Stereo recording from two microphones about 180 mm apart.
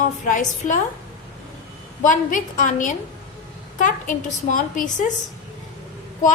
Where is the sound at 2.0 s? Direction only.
45° left (ahead or behind).